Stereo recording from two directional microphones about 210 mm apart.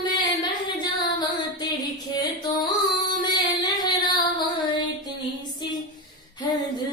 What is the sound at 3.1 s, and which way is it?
Child singing, 20° left (ahead or behind).